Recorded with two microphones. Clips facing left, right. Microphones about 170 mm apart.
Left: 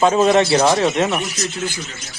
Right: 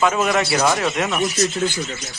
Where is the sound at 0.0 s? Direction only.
30° left (ahead or behind).